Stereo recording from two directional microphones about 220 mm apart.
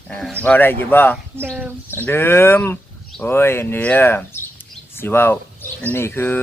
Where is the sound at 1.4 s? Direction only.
10° right (ahead or behind).